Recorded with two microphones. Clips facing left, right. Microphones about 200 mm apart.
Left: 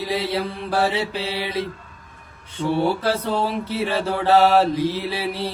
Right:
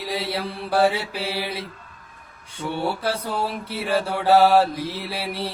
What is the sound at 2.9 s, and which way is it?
Mantra, centre (ahead or behind).